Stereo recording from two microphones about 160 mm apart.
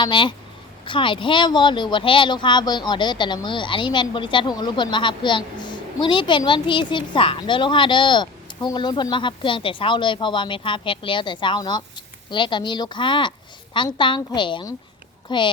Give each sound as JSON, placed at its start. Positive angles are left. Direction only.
{"t": 0.0, "sound": "speech", "side_deg": 30}